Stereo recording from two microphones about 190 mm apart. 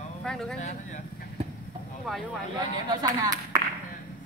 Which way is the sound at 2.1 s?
Centre (ahead or behind).